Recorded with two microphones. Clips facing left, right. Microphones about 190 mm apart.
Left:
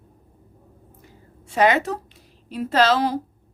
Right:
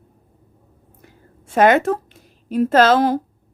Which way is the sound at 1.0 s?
50° right (ahead or behind).